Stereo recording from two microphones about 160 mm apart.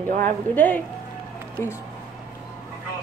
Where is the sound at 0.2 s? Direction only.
10° left (ahead or behind).